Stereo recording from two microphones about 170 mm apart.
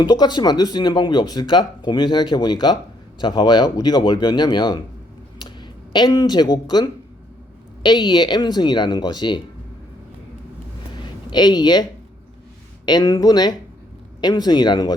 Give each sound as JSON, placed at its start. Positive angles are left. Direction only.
{"t": 0.0, "sound": "speech", "side_deg": 25}
{"t": 10.9, "sound": "a sound", "side_deg": 25}
{"t": 12.8, "sound": "speech", "side_deg": 25}